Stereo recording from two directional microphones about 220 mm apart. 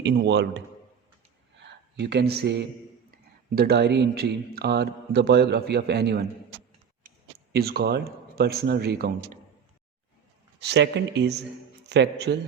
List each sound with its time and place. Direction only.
0.0 s a man's voice: 50° right (ahead or behind)
1.5 s a sound: 50° right (ahead or behind)
3.5 s a man's voice: 45° right (ahead or behind)
10.6 s a man's voice: 50° right (ahead or behind)